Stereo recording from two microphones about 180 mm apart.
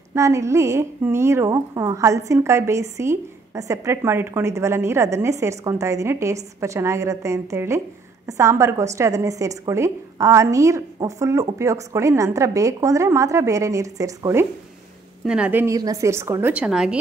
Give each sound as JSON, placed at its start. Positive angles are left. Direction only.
{"t": 0.1, "sound": "a woman's voice", "side_deg": -15}
{"t": 15.2, "sound": "a woman's voice", "side_deg": -5}